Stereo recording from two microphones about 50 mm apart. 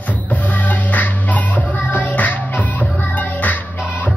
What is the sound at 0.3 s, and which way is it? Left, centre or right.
Music, left.